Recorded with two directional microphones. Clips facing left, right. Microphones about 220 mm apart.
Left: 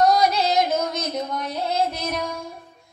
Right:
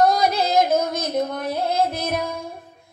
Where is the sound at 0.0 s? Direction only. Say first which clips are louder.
Even; 55° right (ahead or behind).